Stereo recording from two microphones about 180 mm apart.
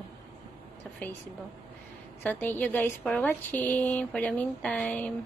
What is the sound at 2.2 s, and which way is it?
A woman's voice, 10° left (ahead or behind).